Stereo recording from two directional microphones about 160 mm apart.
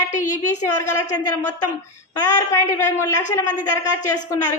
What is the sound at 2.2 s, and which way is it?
A woman's voice, 20° left (ahead or behind).